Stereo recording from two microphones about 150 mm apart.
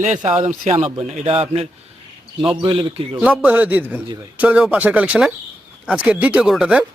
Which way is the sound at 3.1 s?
10° right (ahead or behind).